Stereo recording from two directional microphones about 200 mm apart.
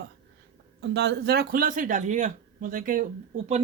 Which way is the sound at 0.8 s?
60° right (ahead or behind).